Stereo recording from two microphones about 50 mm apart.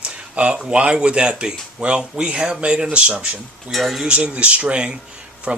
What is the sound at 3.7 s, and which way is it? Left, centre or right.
Speech, centre.